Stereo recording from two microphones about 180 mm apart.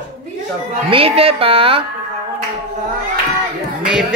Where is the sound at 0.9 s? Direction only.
30° right (ahead or behind).